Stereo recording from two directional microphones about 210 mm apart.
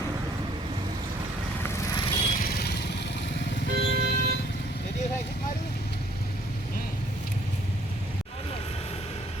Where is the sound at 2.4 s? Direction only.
50° left (ahead or behind).